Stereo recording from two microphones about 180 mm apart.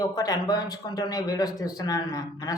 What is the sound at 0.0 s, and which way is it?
A man's voice, 20° left (ahead or behind).